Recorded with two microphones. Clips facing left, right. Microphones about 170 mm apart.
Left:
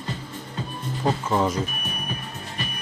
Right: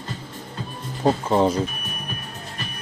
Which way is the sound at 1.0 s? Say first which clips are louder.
Right 4 dB; 30° right (ahead or behind).